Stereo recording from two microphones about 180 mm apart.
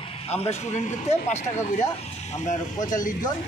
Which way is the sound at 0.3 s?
35° left (ahead or behind).